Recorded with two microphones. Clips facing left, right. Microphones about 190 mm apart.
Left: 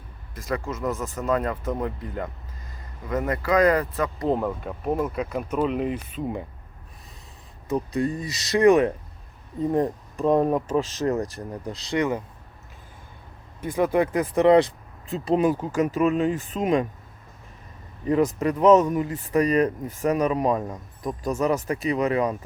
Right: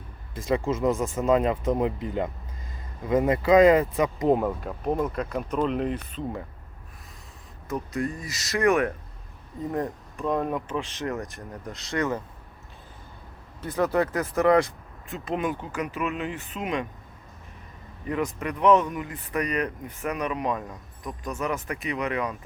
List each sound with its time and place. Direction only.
0.4 s speech: 25° right (ahead or behind)
4.4 s speech: centre (ahead or behind)
7.7 s speech: 30° left (ahead or behind)
10.2 s speech: 35° left (ahead or behind)
11.9 s speech: 15° left (ahead or behind)
13.6 s speech: 15° left (ahead or behind); by 16.8 s 40° left (ahead or behind)
18.3 s speech: 40° left (ahead or behind)
19.5 s speech: 40° left (ahead or behind)
21.7 s speech: 35° left (ahead or behind)